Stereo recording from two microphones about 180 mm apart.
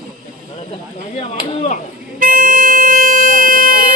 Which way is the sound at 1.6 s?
45° left (ahead or behind).